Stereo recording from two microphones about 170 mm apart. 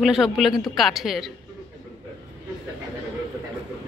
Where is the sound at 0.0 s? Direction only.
Centre (ahead or behind).